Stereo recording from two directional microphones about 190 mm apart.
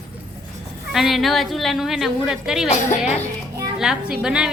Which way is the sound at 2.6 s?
35° left (ahead or behind).